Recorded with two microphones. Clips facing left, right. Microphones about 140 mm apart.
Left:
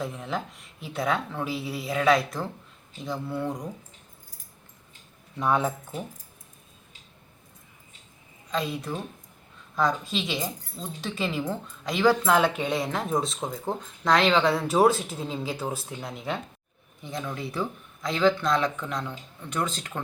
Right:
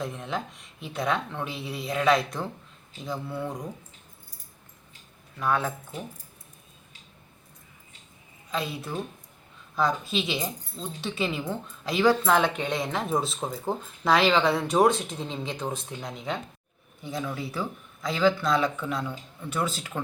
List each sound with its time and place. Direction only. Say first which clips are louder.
0.0 s speech: left 1 dB; centre (ahead or behind)
5.4 s speech: left 2 dB; 15° left (ahead or behind)
8.4 s speech: left 2 dB; centre (ahead or behind)